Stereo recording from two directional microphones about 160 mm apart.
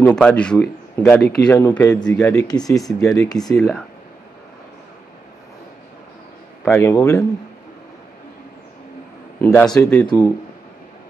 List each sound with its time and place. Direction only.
0.0 s a man's voice: 5° left (ahead or behind)
2.3 s speech: 25° left (ahead or behind)
6.6 s a man's voice: 15° left (ahead or behind)
9.8 s a man's voice: 5° left (ahead or behind)
10.0 s speech: 20° left (ahead or behind)